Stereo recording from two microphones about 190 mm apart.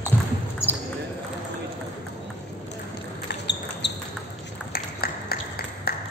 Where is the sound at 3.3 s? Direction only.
65° left (ahead or behind).